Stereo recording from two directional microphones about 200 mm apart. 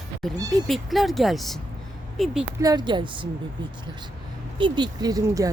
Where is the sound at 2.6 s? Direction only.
20° right (ahead or behind).